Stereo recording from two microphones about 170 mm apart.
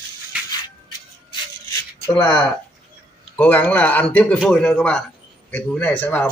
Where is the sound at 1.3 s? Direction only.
20° left (ahead or behind).